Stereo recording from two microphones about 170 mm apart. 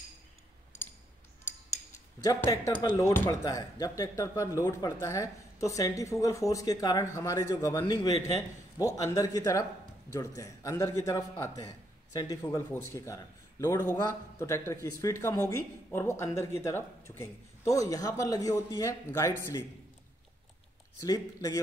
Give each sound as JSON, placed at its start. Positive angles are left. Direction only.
{"t": 2.2, "sound": "a man's voice", "side_deg": 20}
{"t": 21.0, "sound": "speech", "side_deg": 20}